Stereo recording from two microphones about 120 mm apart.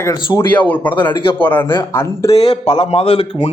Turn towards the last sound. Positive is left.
turn(degrees=50)  # may be behind; listen again after turning